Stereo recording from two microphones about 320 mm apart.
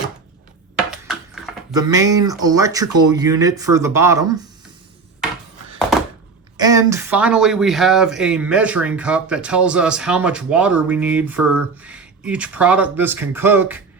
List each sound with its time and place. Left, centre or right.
0.9 s a sound: centre
1.7 s speech: centre
6.6 s speech: centre